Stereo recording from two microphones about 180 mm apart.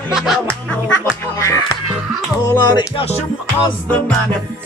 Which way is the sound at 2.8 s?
30° left (ahead or behind).